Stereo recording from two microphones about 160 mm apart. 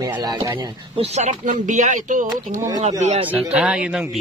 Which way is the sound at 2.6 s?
20° right (ahead or behind).